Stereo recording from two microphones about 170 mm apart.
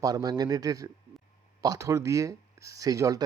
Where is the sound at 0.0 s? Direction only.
20° right (ahead or behind).